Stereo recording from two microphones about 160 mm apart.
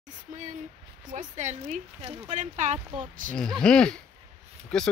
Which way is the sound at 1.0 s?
50° right (ahead or behind).